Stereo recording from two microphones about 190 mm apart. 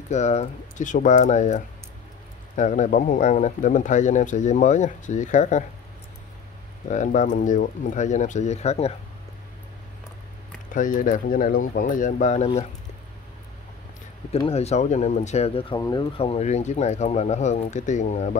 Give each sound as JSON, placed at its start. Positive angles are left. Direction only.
{"t": 0.1, "sound": "speech", "side_deg": 35}
{"t": 6.9, "sound": "speech", "side_deg": 40}
{"t": 10.7, "sound": "speech", "side_deg": 45}
{"t": 14.5, "sound": "speech", "side_deg": 35}